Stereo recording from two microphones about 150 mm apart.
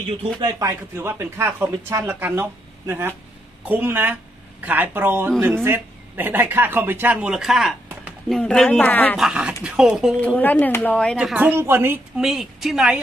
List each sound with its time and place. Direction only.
0.4 s speech: 25° right (ahead or behind); by 9.1 s 10° left (ahead or behind)
9.1 s speech: 5° right (ahead or behind)
10.2 s speech: 10° left (ahead or behind)
11.1 s speech: 10° right (ahead or behind)
12.2 s speech: 5° right (ahead or behind)